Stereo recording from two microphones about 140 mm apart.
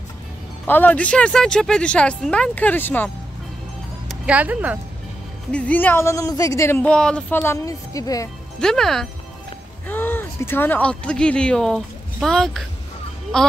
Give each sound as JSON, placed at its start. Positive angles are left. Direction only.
{"t": 0.7, "sound": "speech", "side_deg": 10}
{"t": 4.1, "sound": "speech", "side_deg": -10}
{"t": 5.5, "sound": "speech", "side_deg": 10}
{"t": 8.5, "sound": "speech", "side_deg": 5}
{"t": 9.8, "sound": "speech", "side_deg": 15}